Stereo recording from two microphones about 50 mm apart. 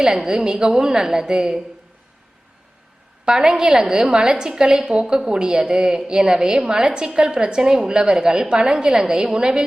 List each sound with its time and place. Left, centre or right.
0.0 s a woman's voice: centre
3.2 s a woman's voice: centre